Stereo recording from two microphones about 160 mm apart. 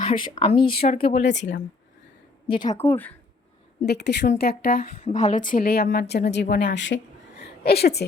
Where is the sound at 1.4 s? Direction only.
90° left.